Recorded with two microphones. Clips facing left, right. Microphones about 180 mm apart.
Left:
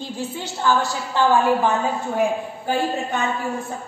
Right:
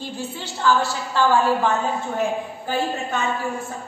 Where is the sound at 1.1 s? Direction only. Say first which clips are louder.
Left 1 dB; 15° left (ahead or behind).